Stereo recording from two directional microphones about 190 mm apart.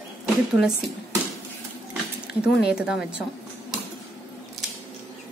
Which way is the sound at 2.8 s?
5° right (ahead or behind).